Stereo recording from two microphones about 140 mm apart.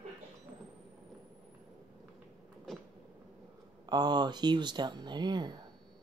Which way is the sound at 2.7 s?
Centre (ahead or behind).